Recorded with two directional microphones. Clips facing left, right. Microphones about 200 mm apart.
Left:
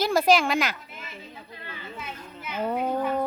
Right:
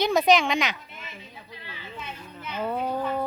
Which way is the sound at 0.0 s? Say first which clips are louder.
Even; 5° left (ahead or behind).